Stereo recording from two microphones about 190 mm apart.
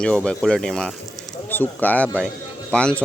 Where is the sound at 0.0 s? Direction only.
5° left (ahead or behind).